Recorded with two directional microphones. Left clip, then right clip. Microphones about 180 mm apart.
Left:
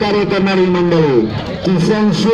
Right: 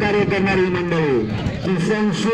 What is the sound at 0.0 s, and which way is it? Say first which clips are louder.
A man's voice: left 4 dB; 55° left (ahead or behind).